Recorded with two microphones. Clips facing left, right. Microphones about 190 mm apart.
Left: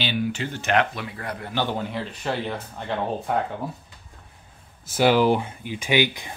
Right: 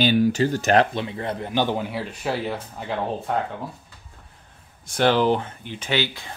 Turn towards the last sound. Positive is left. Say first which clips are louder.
# left 3 dB
turn(degrees=15)  # may be behind; listen again after turning